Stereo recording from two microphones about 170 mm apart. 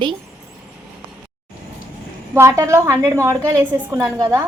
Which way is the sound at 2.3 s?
15° right (ahead or behind).